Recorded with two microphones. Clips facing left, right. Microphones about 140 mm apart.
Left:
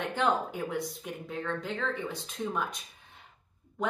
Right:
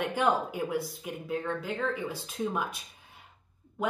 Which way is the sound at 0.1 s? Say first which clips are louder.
Right 1 dB; 10° right (ahead or behind).